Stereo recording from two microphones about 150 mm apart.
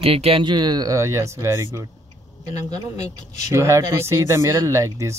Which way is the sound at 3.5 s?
20° right (ahead or behind).